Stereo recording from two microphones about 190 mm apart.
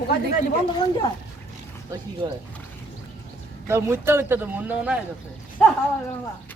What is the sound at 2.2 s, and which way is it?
Speech, 20° right (ahead or behind).